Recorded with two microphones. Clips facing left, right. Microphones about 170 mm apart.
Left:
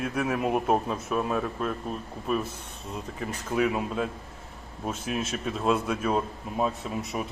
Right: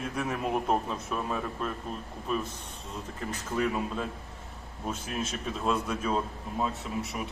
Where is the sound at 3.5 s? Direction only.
10° left (ahead or behind).